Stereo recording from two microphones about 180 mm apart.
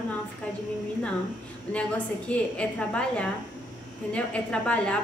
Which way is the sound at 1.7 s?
5° left (ahead or behind).